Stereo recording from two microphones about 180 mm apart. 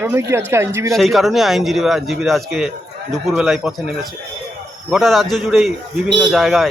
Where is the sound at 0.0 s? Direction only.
15° right (ahead or behind).